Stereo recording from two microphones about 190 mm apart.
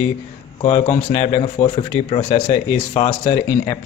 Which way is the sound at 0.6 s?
35° left (ahead or behind).